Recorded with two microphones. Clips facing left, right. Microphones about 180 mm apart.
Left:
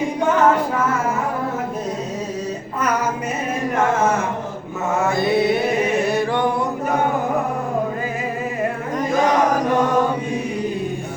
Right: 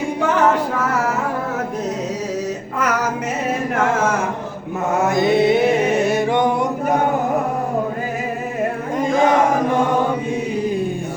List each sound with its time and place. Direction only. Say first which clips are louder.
5.1 s mantra: right 4 dB; 20° right (ahead or behind)
6.1 s music: right 2 dB; 20° right (ahead or behind)
9.0 s chant: right 2 dB; 25° right (ahead or behind)